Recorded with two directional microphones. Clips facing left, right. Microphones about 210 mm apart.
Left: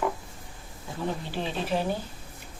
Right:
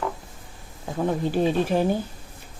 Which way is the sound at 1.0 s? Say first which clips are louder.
Right 9 dB; 50° right (ahead or behind).